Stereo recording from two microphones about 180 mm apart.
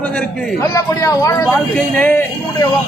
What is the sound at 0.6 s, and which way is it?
Speech, 20° left (ahead or behind).